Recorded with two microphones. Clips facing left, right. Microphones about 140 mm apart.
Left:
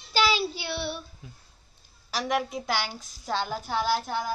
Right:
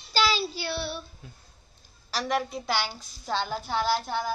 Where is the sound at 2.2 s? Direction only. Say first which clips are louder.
Even; 10° left (ahead or behind).